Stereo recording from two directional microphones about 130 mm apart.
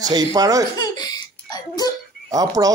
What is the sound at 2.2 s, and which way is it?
Speech, 30° right (ahead or behind).